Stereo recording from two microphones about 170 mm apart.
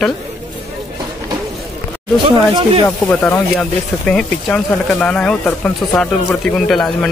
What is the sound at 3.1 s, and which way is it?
Speech, 5° left (ahead or behind).